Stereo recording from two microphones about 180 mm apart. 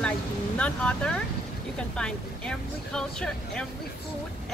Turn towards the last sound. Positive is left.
turn(degrees=5)  # may be behind; listen again after turning